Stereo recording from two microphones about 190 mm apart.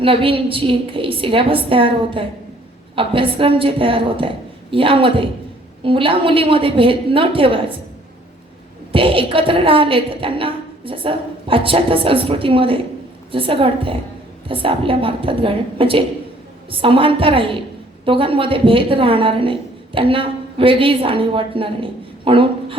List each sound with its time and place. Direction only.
0.0 s a woman's voice: 30° right (ahead or behind)
8.9 s a woman's voice: 30° right (ahead or behind)